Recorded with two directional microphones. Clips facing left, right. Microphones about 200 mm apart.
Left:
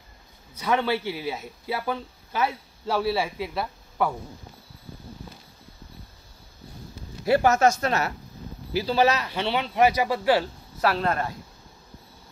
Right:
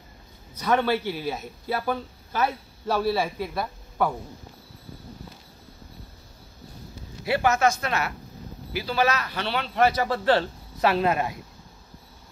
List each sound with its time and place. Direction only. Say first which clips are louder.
0.6 s speech: right 1 dB; 10° left (ahead or behind)
7.2 s speech: left 3 dB; 40° left (ahead or behind); by 11.3 s 10° right (ahead or behind)